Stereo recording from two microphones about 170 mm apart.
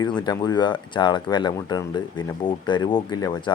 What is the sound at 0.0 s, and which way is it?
Speech, 25° left (ahead or behind).